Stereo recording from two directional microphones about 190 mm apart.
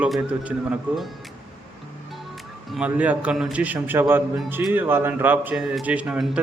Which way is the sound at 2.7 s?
5° right (ahead or behind).